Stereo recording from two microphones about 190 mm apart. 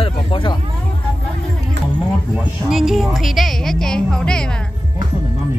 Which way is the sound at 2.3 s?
Centre (ahead or behind).